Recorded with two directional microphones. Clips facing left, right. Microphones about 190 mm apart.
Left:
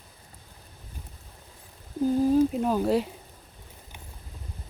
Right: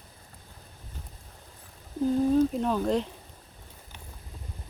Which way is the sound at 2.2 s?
5° left (ahead or behind).